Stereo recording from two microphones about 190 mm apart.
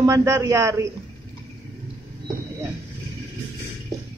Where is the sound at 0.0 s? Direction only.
15° right (ahead or behind).